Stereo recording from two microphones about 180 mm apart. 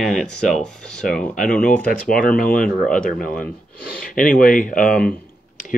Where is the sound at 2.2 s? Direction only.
50° left (ahead or behind).